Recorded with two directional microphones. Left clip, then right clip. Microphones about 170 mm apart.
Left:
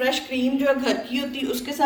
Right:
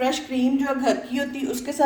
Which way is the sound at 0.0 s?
60° right (ahead or behind).